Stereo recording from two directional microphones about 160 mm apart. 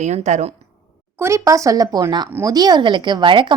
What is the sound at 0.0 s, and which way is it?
Speech, 45° right (ahead or behind).